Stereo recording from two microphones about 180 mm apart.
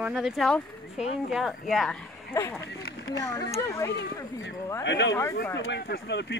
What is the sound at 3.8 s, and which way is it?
Speech, 75° left (ahead or behind).